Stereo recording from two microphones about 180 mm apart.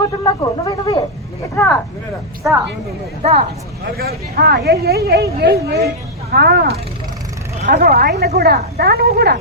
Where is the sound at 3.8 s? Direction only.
60° right (ahead or behind).